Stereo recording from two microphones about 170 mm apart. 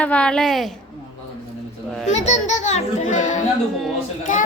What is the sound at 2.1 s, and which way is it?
A child's voice, 45° left (ahead or behind).